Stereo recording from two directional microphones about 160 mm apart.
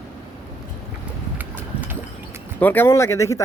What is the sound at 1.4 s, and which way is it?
Clip-clop, 10° right (ahead or behind).